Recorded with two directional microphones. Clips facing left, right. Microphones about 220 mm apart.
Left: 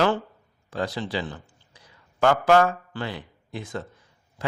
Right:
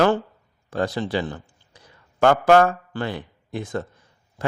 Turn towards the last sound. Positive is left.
turn(degrees=-50)  # may be behind; listen again after turning